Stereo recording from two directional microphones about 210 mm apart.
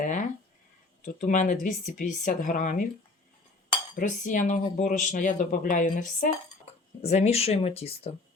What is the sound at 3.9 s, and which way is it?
Speech, 40° left (ahead or behind).